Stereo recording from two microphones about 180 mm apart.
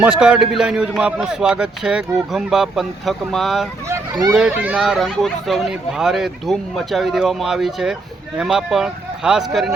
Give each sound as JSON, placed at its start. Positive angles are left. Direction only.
{"t": 0.0, "sound": "speech", "side_deg": -5}
{"t": 3.8, "sound": "a sound", "side_deg": -20}
{"t": 4.4, "sound": "speech", "side_deg": -5}